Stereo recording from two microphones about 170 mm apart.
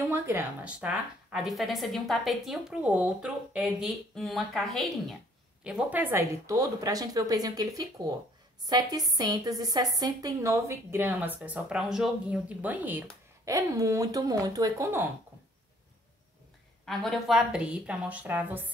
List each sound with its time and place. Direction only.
0.1 s a woman's voice: 10° right (ahead or behind)
16.8 s a woman's voice: centre (ahead or behind)